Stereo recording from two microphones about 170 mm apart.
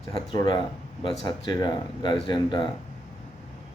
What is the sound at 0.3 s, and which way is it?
Speech, 25° left (ahead or behind).